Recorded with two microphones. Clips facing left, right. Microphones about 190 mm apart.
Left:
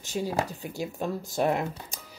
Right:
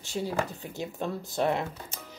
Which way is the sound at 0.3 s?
40° left (ahead or behind).